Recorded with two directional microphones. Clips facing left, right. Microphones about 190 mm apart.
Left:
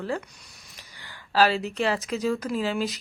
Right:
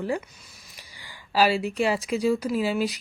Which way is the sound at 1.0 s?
10° right (ahead or behind).